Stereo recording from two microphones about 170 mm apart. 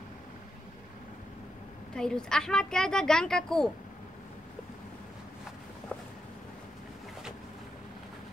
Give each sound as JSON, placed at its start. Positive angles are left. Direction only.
{"t": 2.0, "sound": "a woman's voice", "side_deg": 5}